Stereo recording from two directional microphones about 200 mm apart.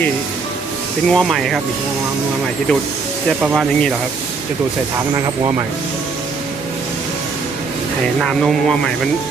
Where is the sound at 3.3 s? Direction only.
5° right (ahead or behind).